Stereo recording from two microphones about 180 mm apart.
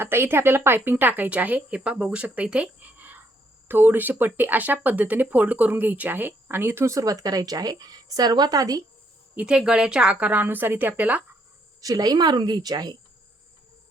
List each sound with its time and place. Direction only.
0.0 s speech: 15° right (ahead or behind)
9.3 s speech: 5° right (ahead or behind)
11.8 s speech: 20° right (ahead or behind)